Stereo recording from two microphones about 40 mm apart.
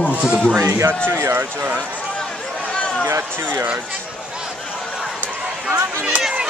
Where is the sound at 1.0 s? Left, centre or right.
Right.